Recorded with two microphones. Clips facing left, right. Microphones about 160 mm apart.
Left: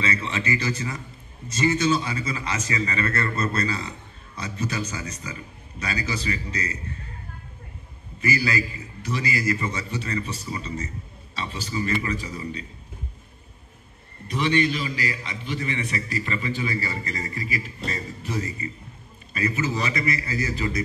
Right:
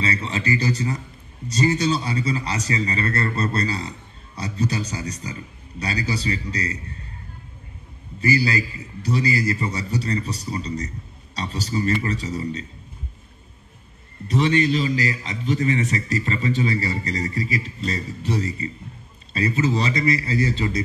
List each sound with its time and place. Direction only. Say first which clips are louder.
0.0 s a man's voice: right 2 dB; 35° right (ahead or behind)
8.2 s a man's voice: right 4 dB; 35° right (ahead or behind)
14.2 s a man's voice: right 3 dB; 35° right (ahead or behind)